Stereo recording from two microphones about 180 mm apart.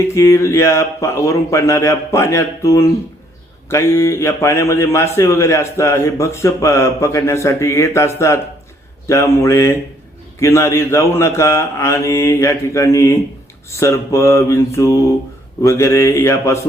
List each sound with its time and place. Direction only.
0.1 s speech: 15° left (ahead or behind)